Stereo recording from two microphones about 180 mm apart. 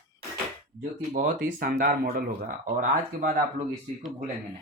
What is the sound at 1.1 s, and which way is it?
Speech, 45° right (ahead or behind).